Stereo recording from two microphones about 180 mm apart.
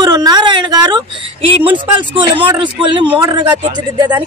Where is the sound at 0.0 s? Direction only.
20° right (ahead or behind).